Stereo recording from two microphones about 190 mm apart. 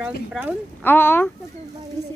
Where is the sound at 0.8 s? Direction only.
10° left (ahead or behind).